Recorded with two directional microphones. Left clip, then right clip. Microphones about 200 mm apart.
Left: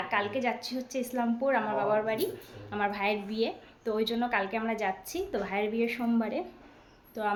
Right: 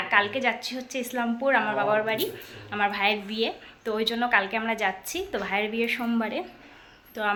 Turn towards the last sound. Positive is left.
turn(degrees=0)  # may be behind; listen again after turning